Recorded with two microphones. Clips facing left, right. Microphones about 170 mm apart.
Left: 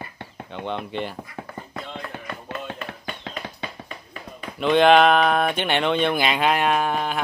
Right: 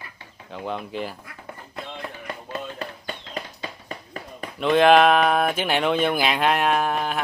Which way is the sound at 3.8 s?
60° left (ahead or behind).